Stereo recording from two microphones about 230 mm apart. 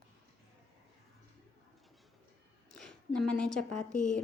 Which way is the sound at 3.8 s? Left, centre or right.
Centre.